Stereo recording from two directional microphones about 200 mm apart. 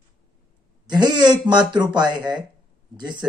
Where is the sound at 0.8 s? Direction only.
20° right (ahead or behind).